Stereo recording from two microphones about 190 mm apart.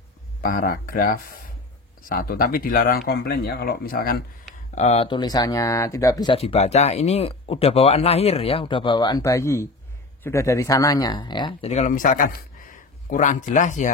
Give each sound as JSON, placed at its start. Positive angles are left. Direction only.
{"t": 0.4, "sound": "speech", "side_deg": 50}
{"t": 4.7, "sound": "speech", "side_deg": 35}